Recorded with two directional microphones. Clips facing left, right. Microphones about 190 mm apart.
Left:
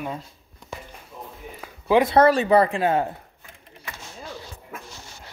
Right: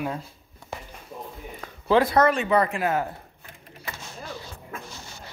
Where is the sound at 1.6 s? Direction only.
10° left (ahead or behind).